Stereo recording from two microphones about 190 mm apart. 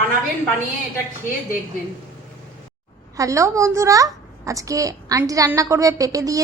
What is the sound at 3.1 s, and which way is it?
A child's voice, 15° right (ahead or behind).